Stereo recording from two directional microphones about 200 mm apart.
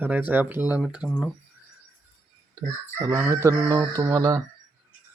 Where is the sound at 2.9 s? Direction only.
15° right (ahead or behind).